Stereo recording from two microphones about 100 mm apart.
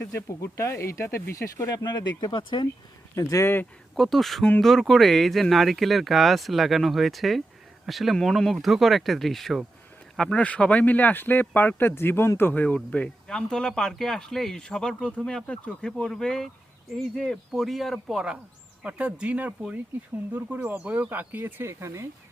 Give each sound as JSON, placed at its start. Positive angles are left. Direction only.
{"t": 0.1, "sound": "speech", "side_deg": 30}
{"t": 3.2, "sound": "speech", "side_deg": 30}
{"t": 3.9, "sound": "speech", "side_deg": 0}